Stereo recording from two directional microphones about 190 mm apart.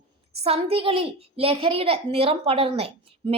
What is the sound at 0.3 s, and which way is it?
A woman's voice, 30° right (ahead or behind).